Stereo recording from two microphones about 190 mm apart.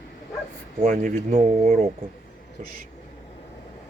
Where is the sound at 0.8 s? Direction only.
45° right (ahead or behind).